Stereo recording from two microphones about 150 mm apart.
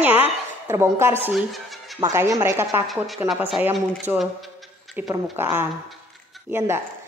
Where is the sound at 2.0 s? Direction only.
20° right (ahead or behind).